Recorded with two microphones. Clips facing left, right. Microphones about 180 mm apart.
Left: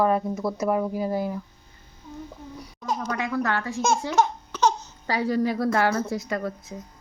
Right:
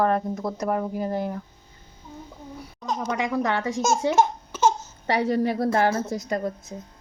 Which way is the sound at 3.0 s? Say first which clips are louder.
Right 3 dB; 20° right (ahead or behind).